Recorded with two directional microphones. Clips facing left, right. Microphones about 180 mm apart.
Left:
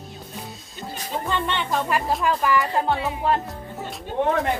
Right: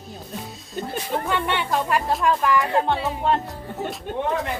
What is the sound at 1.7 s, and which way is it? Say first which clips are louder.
Speech: even; centre (ahead or behind).